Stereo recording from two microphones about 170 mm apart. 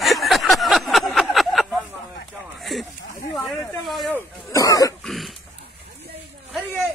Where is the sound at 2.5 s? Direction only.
Centre (ahead or behind).